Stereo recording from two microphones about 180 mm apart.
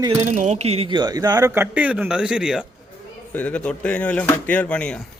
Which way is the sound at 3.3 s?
5° left (ahead or behind).